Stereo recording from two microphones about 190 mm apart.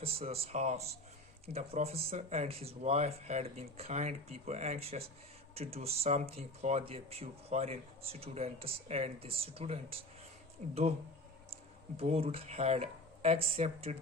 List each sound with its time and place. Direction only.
0.0 s speech: 30° right (ahead or behind)
11.9 s speech: 30° right (ahead or behind)